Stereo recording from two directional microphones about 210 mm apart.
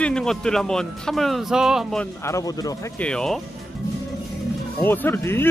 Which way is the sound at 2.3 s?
15° left (ahead or behind).